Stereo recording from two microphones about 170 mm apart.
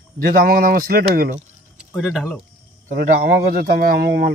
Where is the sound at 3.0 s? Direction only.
60° right (ahead or behind).